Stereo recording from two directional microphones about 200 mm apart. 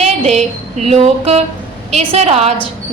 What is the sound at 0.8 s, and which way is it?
A woman's voice, 30° right (ahead or behind).